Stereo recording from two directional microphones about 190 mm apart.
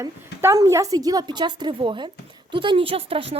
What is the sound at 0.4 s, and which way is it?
A woman's voice, 15° right (ahead or behind).